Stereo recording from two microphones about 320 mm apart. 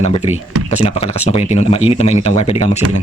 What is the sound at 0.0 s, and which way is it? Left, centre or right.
Speech, centre.